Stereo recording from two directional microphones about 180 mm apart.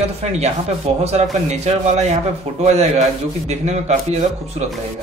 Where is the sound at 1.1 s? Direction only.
40° right (ahead or behind).